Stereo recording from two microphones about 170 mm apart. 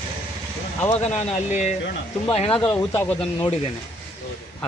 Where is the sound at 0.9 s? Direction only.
40° left (ahead or behind).